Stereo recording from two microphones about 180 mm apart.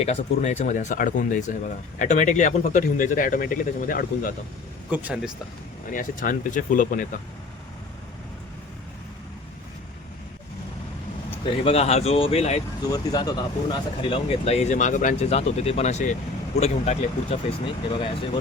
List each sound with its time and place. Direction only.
0.0 s speech: 40° left (ahead or behind)
4.9 s speech: 5° right (ahead or behind)
5.9 s speech: 50° left (ahead or behind)
11.4 s speech: 35° left (ahead or behind)
12.8 s speech: 20° left (ahead or behind)